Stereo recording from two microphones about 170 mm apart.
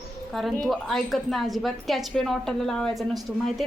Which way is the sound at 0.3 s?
Centre (ahead or behind).